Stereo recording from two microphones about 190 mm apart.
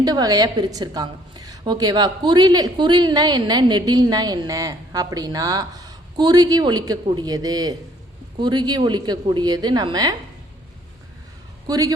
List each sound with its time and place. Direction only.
0.0 s a woman's voice: 20° right (ahead or behind)
11.6 s a man's voice: 20° right (ahead or behind)